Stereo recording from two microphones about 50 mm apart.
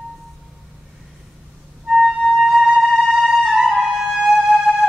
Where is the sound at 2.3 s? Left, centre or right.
Centre.